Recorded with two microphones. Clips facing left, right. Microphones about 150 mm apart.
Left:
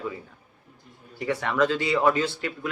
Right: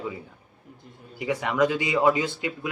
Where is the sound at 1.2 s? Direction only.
15° right (ahead or behind).